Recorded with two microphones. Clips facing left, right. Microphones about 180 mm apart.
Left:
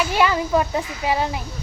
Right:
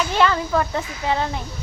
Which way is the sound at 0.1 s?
10° left (ahead or behind).